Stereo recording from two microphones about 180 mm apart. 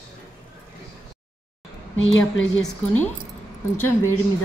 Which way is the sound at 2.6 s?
10° left (ahead or behind).